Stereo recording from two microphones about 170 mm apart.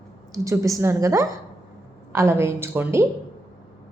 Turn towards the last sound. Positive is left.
turn(degrees=-15)  # may be behind; listen again after turning